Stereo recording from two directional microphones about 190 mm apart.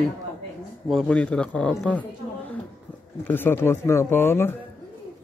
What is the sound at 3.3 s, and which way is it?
Speech, 10° left (ahead or behind).